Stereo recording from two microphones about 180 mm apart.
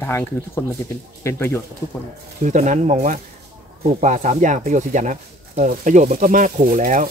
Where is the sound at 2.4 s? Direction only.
40° right (ahead or behind).